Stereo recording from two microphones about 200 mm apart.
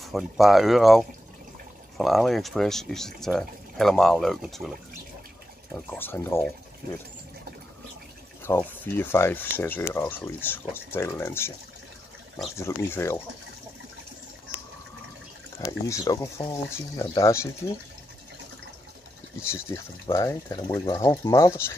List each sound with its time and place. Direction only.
0.0 s speech: centre (ahead or behind)
5.9 s speech: 10° left (ahead or behind)
8.4 s speech: 10° left (ahead or behind)
12.5 s speech: 15° left (ahead or behind)
15.6 s speech: 15° left (ahead or behind)
19.5 s speech: 15° left (ahead or behind)